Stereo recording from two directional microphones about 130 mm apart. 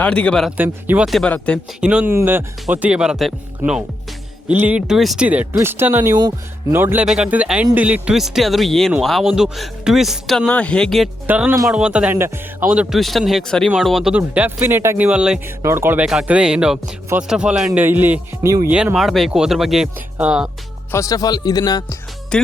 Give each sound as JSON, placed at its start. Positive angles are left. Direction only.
{"t": 0.0, "sound": "speech", "side_deg": 10}
{"t": 0.5, "sound": "speech", "side_deg": -10}
{"t": 1.0, "sound": "speech", "side_deg": 0}
{"t": 6.1, "sound": "speech", "side_deg": -30}
{"t": 6.7, "sound": "speech", "side_deg": -15}
{"t": 11.3, "sound": "speech", "side_deg": -15}
{"t": 13.0, "sound": "speech", "side_deg": 0}
{"t": 14.1, "sound": "speech", "side_deg": -15}
{"t": 15.6, "sound": "speech", "side_deg": -20}
{"t": 20.9, "sound": "speech", "side_deg": 25}
{"t": 22.3, "sound": "speech", "side_deg": 5}